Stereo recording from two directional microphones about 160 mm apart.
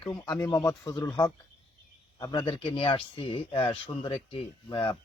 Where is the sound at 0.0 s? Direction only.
25° left (ahead or behind).